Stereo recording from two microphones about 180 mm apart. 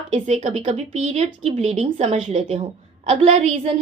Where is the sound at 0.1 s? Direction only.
40° right (ahead or behind).